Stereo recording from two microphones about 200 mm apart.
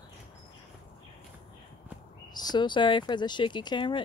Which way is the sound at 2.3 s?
20° left (ahead or behind).